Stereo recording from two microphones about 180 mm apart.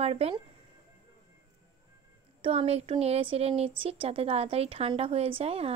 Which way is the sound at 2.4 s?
35° right (ahead or behind).